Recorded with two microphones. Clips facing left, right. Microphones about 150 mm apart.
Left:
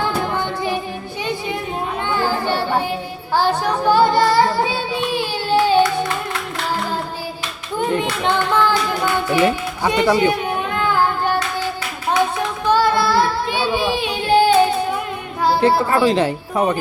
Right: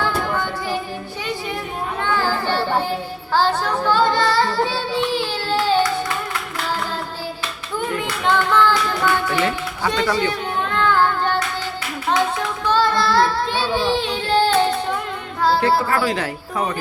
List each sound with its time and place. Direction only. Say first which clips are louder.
0.0 s music: left 1 dB; 20° left (ahead or behind)
2.0 s a sound: left 1 dB; 15° left (ahead or behind)
3.3 s child singing: left 1 dB; 15° left (ahead or behind)
7.8 s music: left 5 dB; 20° left (ahead or behind)
12.6 s child singing: left 2 dB; 10° left (ahead or behind)
15.4 s a child's voice: left 2 dB; 15° left (ahead or behind)